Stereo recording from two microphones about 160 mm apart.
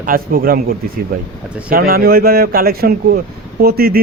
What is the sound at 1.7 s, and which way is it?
A man's voice, 70° right (ahead or behind).